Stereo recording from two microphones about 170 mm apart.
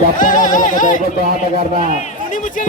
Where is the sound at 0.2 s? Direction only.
50° left (ahead or behind).